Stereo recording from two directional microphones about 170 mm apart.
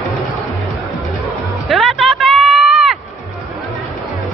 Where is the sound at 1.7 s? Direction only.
Centre (ahead or behind).